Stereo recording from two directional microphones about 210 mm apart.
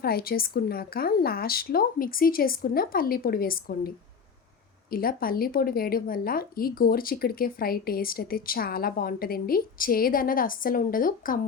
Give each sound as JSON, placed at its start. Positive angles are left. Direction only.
{"t": 0.0, "sound": "a woman's voice", "side_deg": 45}